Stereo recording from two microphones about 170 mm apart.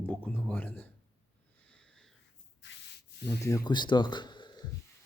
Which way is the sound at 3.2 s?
15° left (ahead or behind).